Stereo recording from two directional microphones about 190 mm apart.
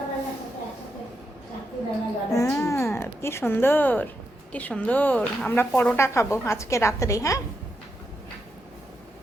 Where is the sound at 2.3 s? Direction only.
15° left (ahead or behind).